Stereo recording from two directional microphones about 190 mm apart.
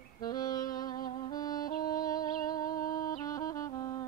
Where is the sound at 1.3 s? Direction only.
20° left (ahead or behind).